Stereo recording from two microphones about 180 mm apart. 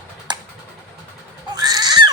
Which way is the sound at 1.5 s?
20° right (ahead or behind).